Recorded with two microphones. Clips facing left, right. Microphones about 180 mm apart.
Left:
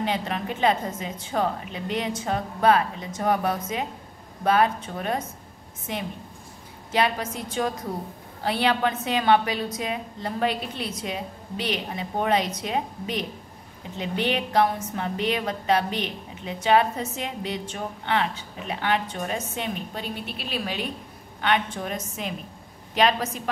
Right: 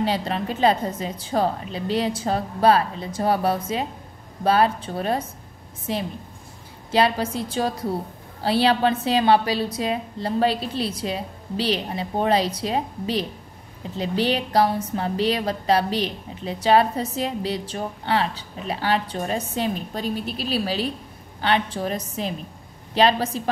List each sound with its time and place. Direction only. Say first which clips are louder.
0.0 s a woman's voice: right 3 dB; 35° right (ahead or behind)